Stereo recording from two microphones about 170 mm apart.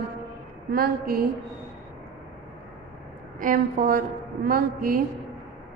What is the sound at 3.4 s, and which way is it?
A woman's voice, 55° right (ahead or behind).